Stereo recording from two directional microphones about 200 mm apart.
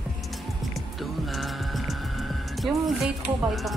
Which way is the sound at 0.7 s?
Centre (ahead or behind).